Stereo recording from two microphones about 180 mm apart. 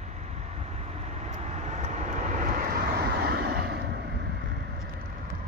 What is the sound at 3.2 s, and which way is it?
Vehicle, 60° right (ahead or behind).